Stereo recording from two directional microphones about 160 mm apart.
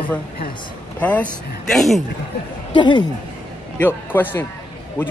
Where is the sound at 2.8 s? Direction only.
30° left (ahead or behind).